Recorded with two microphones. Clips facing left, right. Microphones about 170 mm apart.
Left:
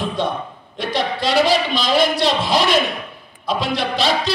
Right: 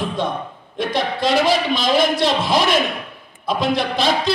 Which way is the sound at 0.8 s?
55° right (ahead or behind).